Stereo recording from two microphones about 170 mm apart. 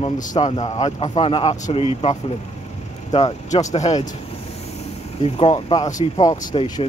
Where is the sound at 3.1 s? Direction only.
40° left (ahead or behind).